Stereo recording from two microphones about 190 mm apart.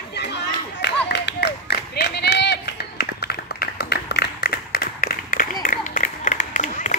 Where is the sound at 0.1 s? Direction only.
60° left (ahead or behind).